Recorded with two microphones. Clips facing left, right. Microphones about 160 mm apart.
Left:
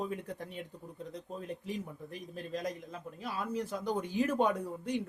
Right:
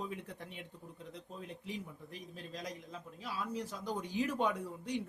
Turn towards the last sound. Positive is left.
turn(degrees=50)  # may be behind; listen again after turning